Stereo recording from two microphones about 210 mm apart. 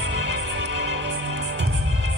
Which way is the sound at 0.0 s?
55° right (ahead or behind).